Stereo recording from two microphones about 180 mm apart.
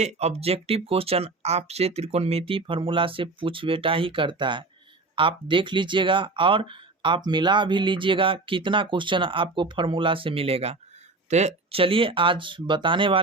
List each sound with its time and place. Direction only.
0.0 s speech: 35° right (ahead or behind)